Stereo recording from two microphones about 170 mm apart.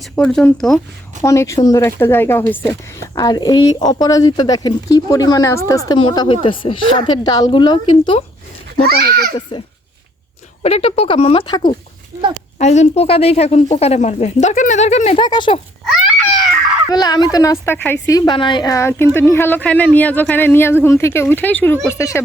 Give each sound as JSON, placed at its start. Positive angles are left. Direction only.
{"t": 0.0, "sound": "speech", "side_deg": 5}
{"t": 1.2, "sound": "a woman's voice", "side_deg": 15}
{"t": 3.2, "sound": "speech", "side_deg": 20}
{"t": 6.0, "sound": "speech", "side_deg": 30}
{"t": 8.9, "sound": "a child's voice", "side_deg": -60}
{"t": 9.5, "sound": "speech", "side_deg": 30}
{"t": 12.5, "sound": "speech", "side_deg": 40}
{"t": 16.9, "sound": "a woman's voice", "side_deg": 25}